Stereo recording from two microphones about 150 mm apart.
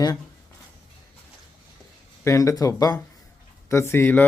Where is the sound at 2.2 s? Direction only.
20° left (ahead or behind).